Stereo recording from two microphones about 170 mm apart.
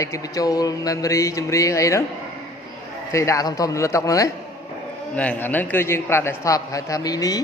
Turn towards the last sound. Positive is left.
turn(degrees=20)  # may be behind; listen again after turning